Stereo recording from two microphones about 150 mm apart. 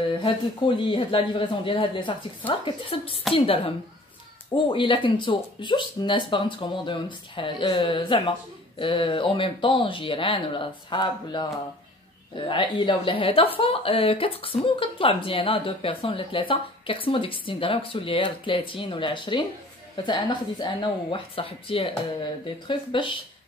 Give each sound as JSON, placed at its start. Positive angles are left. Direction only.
{"t": 0.2, "sound": "a woman's voice", "side_deg": 35}